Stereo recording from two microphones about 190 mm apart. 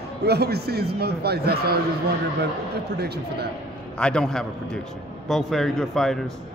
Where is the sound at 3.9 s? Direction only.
5° left (ahead or behind).